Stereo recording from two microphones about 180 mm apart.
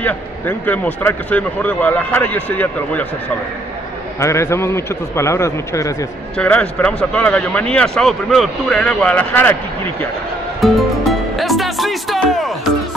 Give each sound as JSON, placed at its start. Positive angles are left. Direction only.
{"t": 0.0, "sound": "a man's voice", "side_deg": 10}
{"t": 4.2, "sound": "a man's voice", "side_deg": 15}
{"t": 6.3, "sound": "speech", "side_deg": 5}
{"t": 10.6, "sound": "music", "side_deg": 0}